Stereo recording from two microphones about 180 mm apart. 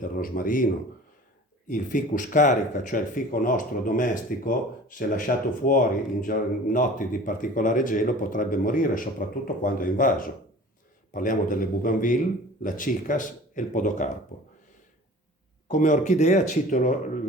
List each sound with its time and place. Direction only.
0.0 s speech: 50° left (ahead or behind)
15.7 s speech: 45° left (ahead or behind)